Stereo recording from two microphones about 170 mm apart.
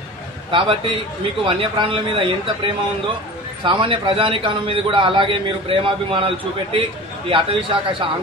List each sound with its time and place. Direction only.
0.5 s a man's voice: 30° right (ahead or behind)